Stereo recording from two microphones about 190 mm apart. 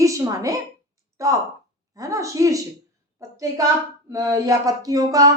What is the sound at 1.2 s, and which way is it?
A woman's voice, 15° right (ahead or behind).